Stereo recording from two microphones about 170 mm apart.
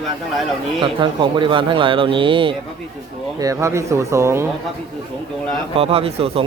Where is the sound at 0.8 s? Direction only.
30° right (ahead or behind).